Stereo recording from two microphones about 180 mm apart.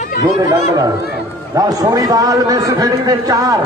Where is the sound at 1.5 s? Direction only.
20° right (ahead or behind).